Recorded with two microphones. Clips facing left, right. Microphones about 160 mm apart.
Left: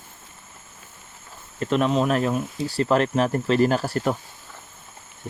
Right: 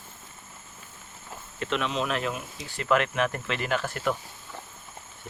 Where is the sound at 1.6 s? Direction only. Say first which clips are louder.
Left 8 dB; 40° left (ahead or behind).